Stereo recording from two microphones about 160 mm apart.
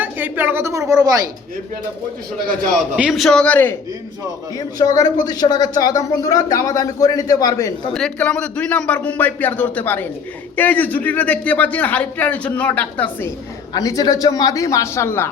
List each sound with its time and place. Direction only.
0.0 s a woman's voice: 10° right (ahead or behind)
2.9 s a man's voice: 5° right (ahead or behind)
4.5 s speech: 20° left (ahead or behind)
7.9 s a man's voice: 5° left (ahead or behind)
13.7 s speech: 25° left (ahead or behind)